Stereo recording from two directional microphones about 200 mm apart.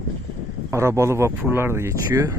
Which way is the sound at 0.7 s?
15° right (ahead or behind).